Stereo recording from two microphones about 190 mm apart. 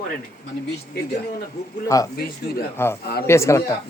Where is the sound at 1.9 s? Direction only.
15° left (ahead or behind).